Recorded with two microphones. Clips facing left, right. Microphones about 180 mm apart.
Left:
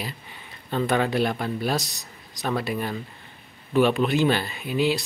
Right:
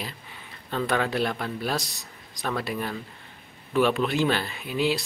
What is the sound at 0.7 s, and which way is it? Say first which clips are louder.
Speech: left 3 dB; 5° left (ahead or behind).